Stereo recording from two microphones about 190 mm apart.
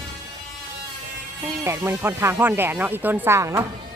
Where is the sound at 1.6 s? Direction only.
15° right (ahead or behind).